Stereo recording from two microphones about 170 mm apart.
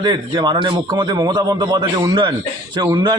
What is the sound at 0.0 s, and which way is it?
A man's voice, 25° right (ahead or behind).